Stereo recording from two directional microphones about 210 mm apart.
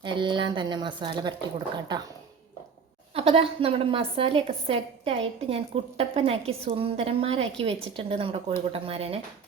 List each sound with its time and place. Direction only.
0.0 s a woman's voice: 20° right (ahead or behind)
3.2 s a woman's voice: 30° right (ahead or behind)